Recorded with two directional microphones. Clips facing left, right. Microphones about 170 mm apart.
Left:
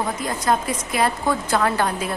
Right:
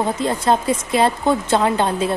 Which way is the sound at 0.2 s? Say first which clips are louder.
Right 3 dB; 30° right (ahead or behind).